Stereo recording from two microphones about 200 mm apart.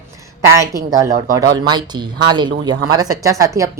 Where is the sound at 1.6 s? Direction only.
20° right (ahead or behind).